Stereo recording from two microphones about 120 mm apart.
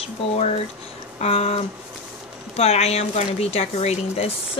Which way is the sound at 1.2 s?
60° left (ahead or behind).